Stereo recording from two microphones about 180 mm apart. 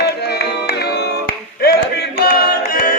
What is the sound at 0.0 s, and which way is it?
Music, 65° left (ahead or behind).